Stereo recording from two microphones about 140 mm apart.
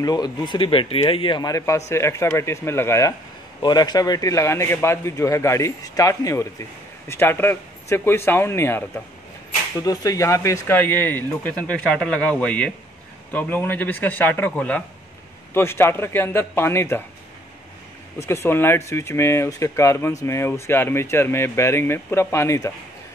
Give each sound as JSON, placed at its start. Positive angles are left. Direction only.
{"t": 0.0, "sound": "speech", "side_deg": 30}
{"t": 18.2, "sound": "speech", "side_deg": 20}